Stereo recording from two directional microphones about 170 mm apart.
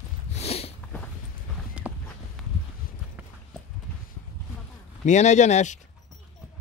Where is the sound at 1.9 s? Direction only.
10° right (ahead or behind).